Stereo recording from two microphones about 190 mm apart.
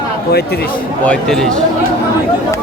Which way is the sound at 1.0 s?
5° left (ahead or behind).